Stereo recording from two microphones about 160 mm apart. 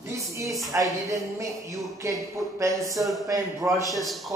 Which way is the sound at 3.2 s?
20° right (ahead or behind).